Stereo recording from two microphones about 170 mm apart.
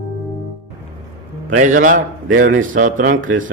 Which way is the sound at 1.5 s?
50° right (ahead or behind).